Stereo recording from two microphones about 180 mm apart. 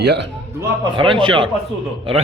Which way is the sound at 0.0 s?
70° right (ahead or behind).